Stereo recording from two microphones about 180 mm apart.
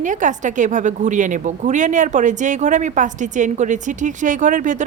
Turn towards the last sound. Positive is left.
turn(degrees=-45)  # may be behind; listen again after turning